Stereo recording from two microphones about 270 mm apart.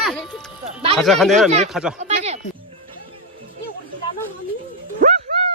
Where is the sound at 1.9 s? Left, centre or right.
Right.